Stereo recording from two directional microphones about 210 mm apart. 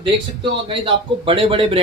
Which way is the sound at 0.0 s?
25° right (ahead or behind).